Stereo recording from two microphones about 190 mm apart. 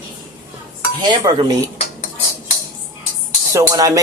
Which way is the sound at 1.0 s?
25° right (ahead or behind).